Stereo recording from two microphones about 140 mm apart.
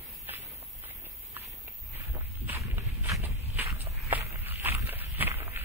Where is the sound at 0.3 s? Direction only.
15° right (ahead or behind).